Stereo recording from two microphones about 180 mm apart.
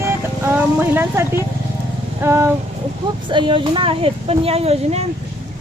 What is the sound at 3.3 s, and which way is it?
Speech, 30° right (ahead or behind).